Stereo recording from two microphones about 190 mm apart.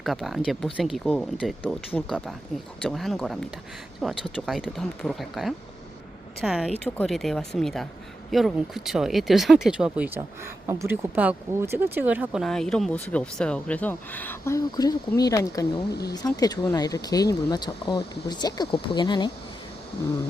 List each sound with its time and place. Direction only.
0.0 s speech: centre (ahead or behind); by 19.3 s 25° left (ahead or behind)